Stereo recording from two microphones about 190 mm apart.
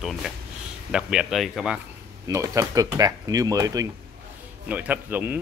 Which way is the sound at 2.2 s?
15° right (ahead or behind).